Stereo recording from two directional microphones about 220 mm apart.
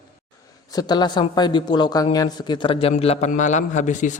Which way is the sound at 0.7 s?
20° left (ahead or behind).